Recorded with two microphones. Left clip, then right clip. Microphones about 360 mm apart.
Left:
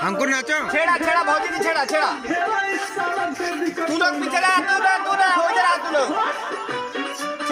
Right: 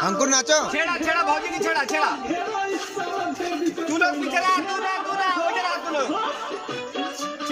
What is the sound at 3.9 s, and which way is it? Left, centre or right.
Speech, left.